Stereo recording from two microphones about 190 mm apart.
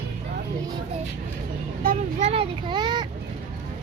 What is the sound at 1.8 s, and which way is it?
Vehicle, 45° right (ahead or behind).